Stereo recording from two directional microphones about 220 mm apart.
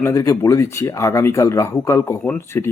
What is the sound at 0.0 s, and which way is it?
Speech, 15° left (ahead or behind).